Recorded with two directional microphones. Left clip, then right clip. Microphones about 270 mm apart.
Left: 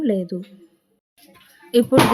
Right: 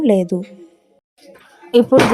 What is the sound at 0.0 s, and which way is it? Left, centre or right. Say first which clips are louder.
Speech: right 7 dB; centre.